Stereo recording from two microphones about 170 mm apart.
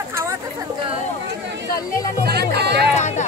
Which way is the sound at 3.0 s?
45° left (ahead or behind).